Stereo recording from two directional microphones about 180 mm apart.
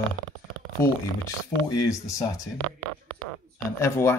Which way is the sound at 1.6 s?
15° left (ahead or behind).